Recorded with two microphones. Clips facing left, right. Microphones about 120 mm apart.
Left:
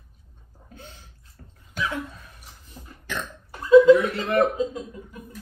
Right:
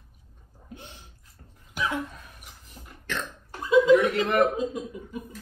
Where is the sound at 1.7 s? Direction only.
10° right (ahead or behind).